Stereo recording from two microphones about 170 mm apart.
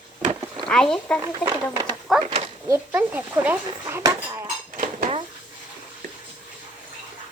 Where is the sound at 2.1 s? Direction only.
Centre (ahead or behind).